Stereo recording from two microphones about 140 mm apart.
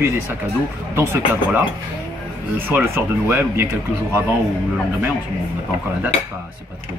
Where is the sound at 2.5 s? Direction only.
15° right (ahead or behind).